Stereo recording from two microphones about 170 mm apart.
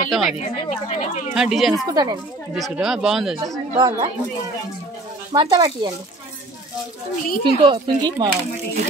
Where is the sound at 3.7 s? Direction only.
25° right (ahead or behind).